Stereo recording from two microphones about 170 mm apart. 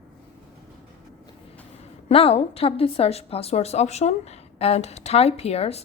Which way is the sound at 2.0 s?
35° left (ahead or behind).